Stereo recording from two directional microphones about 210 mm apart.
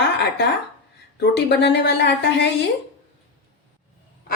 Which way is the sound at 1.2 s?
55° left (ahead or behind).